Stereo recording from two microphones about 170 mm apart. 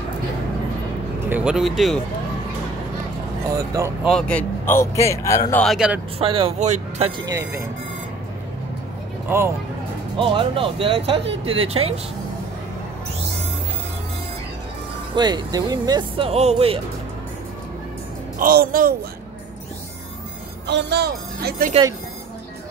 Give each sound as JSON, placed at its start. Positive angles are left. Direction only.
{"t": 1.2, "sound": "speech", "side_deg": -10}
{"t": 3.4, "sound": "speech", "side_deg": -20}
{"t": 4.0, "sound": "a man's voice", "side_deg": 5}
{"t": 5.6, "sound": "speech", "side_deg": 0}
{"t": 6.1, "sound": "speech", "side_deg": -35}
{"t": 10.1, "sound": "speech", "side_deg": -30}
{"t": 15.1, "sound": "speech", "side_deg": -25}
{"t": 18.4, "sound": "speech", "side_deg": -60}
{"t": 20.6, "sound": "speech", "side_deg": -75}